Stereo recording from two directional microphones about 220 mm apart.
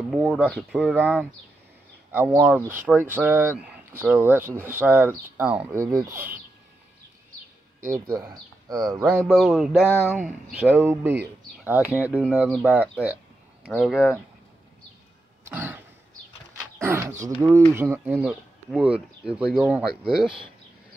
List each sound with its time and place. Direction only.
0.1 s speech: 5° right (ahead or behind)
2.3 s speech: 10° right (ahead or behind)
7.9 s speech: 15° right (ahead or behind)
9.0 s speech: centre (ahead or behind)
15.4 s throat clearing: 10° right (ahead or behind)
16.5 s speech: 10° right (ahead or behind)